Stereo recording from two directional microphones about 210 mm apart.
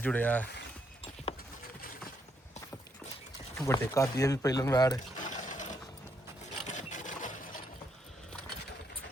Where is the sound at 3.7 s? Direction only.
15° left (ahead or behind).